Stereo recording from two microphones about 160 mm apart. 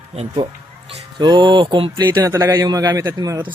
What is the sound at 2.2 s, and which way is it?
Speech, 20° right (ahead or behind).